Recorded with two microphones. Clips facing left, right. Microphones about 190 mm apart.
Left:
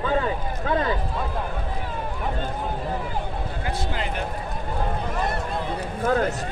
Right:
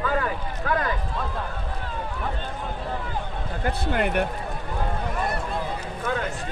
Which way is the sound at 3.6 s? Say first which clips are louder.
Right 6 dB; 60° right (ahead or behind).